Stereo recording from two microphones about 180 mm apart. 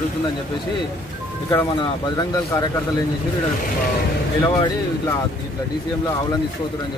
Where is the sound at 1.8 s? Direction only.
25° left (ahead or behind).